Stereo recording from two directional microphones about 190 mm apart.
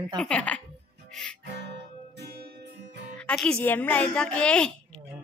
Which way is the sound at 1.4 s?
65° right (ahead or behind).